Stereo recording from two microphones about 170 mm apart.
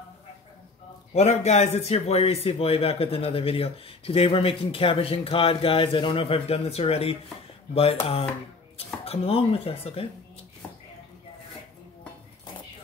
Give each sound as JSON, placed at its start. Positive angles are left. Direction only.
{"t": 1.1, "sound": "a man's voice", "side_deg": 40}